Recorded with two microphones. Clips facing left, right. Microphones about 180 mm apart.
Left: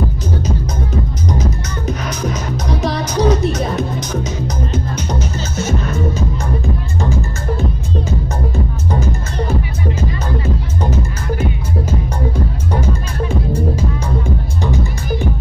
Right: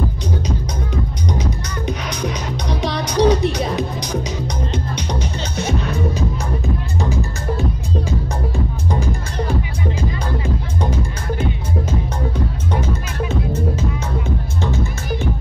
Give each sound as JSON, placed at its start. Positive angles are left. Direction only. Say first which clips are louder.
{"t": 1.9, "sound": "music", "louder": "left 3 dB", "side_deg": 5}
{"t": 5.6, "sound": "music", "louder": "left 1 dB", "side_deg": 0}
{"t": 7.0, "sound": "music", "louder": "left 2 dB", "side_deg": -15}
{"t": 9.9, "sound": "music", "louder": "left 2 dB", "side_deg": -10}
{"t": 14.6, "sound": "music", "louder": "left 2 dB", "side_deg": 15}